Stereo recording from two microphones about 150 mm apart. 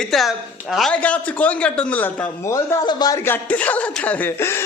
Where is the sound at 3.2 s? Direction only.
10° left (ahead or behind).